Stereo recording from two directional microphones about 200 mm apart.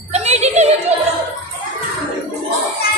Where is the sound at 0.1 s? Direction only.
35° right (ahead or behind).